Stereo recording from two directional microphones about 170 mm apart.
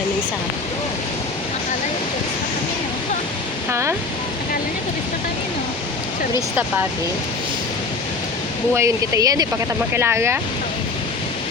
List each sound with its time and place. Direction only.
3.7 s speech: 15° right (ahead or behind)
8.7 s speech: 20° right (ahead or behind)